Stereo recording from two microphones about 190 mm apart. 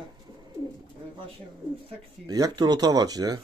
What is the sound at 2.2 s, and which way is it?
Speech, 20° right (ahead or behind).